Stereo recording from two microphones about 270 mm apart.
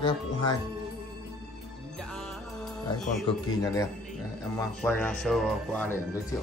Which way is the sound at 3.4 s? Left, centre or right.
Centre.